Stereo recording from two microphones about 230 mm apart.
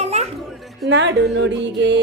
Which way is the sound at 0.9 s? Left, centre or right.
Right.